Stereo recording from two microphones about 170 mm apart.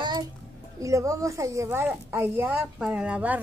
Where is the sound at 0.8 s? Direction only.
20° right (ahead or behind).